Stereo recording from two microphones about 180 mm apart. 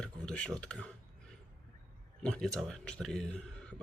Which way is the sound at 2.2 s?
5° left (ahead or behind).